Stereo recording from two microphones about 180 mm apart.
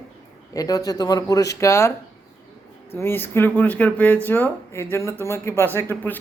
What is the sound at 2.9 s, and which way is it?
Speech, 10° left (ahead or behind).